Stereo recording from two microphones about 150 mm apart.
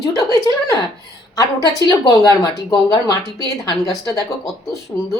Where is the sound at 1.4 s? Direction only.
25° left (ahead or behind).